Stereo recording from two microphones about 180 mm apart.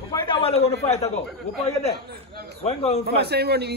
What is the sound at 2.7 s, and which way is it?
Speech, 35° left (ahead or behind).